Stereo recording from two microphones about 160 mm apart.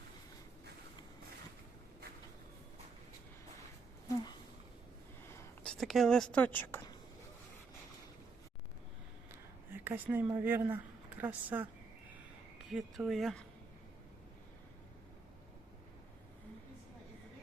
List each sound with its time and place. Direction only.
5.6 s speech: centre (ahead or behind)
9.7 s speech: 10° right (ahead or behind)